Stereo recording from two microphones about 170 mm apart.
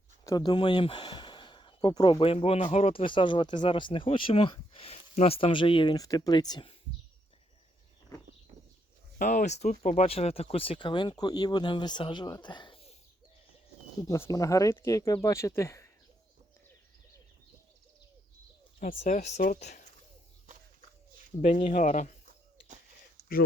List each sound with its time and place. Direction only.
0.3 s speech: 25° left (ahead or behind)
9.1 s speech: 50° left (ahead or behind); by 12.9 s 30° left (ahead or behind)
14.0 s speech: 20° left (ahead or behind)
18.8 s speech: 50° left (ahead or behind)
21.4 s speech: 40° left (ahead or behind)